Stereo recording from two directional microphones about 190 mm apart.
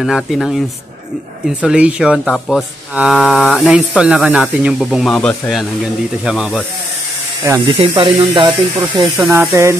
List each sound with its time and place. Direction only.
0.0 s speech: centre (ahead or behind)
1.6 s speech: 5° right (ahead or behind)
7.4 s speech: 15° right (ahead or behind)
9.3 s speech: 15° right (ahead or behind)